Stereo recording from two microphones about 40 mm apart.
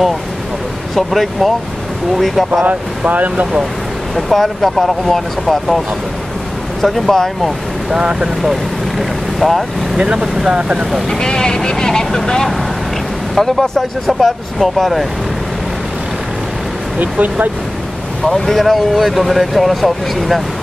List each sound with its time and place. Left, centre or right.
0.9 s speech: centre
3.1 s speech: right
4.1 s speech: centre
6.8 s speech: centre
7.9 s speech: centre
8.4 s speech: centre
9.9 s speech: right
11.1 s speech: centre
13.7 s speech: centre
17.0 s speech: right
18.2 s speech: centre